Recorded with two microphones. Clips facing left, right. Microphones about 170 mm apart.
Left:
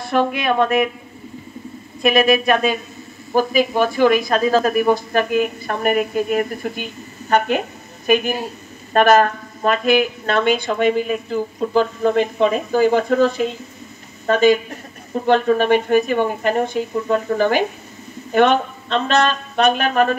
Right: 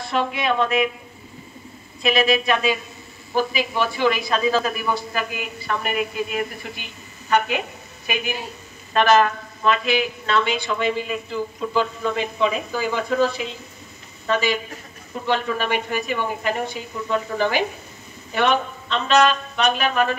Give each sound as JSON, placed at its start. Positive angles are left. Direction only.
{"t": 0.1, "sound": "a woman's voice", "side_deg": 50}
{"t": 2.0, "sound": "a woman's voice", "side_deg": 50}